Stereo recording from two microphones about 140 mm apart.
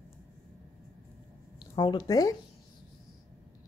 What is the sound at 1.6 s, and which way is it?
Speech, 30° left (ahead or behind).